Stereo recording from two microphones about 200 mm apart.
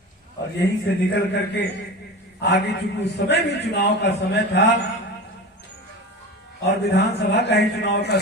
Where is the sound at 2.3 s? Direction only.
55° left (ahead or behind).